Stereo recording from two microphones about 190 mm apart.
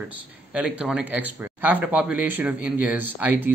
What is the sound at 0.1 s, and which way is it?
Speech, 5° right (ahead or behind).